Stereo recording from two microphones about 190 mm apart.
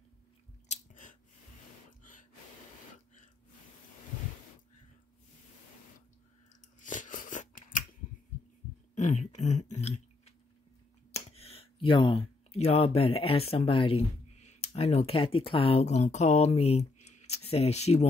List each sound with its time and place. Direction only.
0.7 s scissors: 45° left (ahead or behind)
1.9 s gasp: 45° left (ahead or behind)
6.8 s scissors: 40° left (ahead or behind)
8.9 s speech: 40° left (ahead or behind)